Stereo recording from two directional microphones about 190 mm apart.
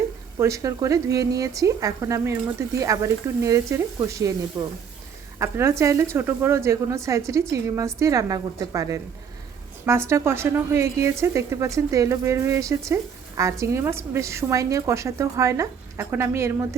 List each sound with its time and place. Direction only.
0.3 s a woman's voice: 15° right (ahead or behind)